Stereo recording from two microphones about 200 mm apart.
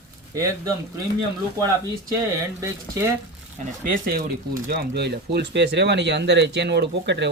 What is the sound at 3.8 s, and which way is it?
Speech, 45° right (ahead or behind).